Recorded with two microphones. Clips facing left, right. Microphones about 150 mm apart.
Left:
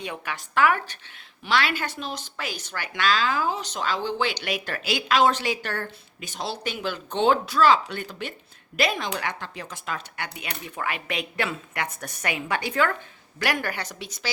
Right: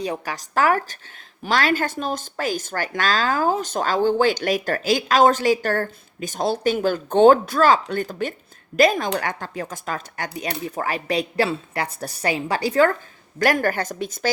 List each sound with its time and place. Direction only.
0.0 s a woman's voice: 35° right (ahead or behind)